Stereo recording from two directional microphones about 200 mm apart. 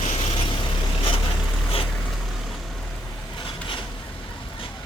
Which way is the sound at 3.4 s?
25° left (ahead or behind).